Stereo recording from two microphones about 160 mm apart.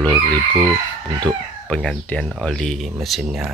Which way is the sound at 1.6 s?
5° left (ahead or behind).